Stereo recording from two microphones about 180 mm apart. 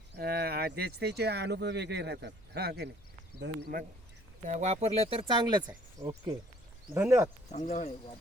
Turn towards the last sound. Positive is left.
turn(degrees=40)  # may be behind; listen again after turning